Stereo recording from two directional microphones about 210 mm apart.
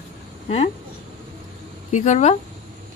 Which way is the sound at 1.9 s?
35° left (ahead or behind).